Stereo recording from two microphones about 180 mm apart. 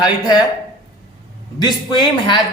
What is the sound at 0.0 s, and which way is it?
Speech, 25° left (ahead or behind).